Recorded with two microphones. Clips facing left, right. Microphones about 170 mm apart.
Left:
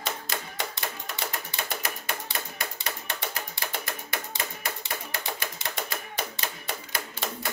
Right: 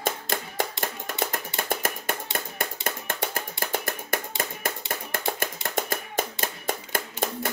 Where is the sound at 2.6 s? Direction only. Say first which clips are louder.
Right 4 dB; 50° right (ahead or behind).